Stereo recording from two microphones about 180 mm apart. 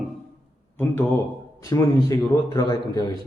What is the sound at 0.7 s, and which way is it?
A man's voice, 10° left (ahead or behind).